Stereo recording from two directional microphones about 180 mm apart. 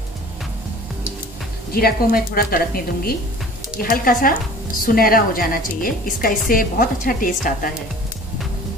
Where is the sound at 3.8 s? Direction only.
50° left (ahead or behind).